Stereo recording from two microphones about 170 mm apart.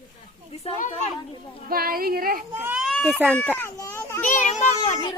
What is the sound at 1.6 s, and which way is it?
Speech, 60° right (ahead or behind).